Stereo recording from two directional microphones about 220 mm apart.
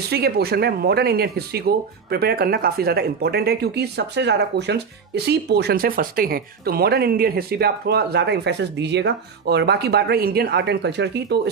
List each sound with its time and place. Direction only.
0.1 s speech: 45° right (ahead or behind)